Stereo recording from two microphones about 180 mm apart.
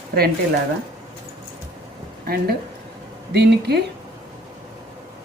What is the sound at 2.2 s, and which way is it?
A woman's voice, 55° right (ahead or behind).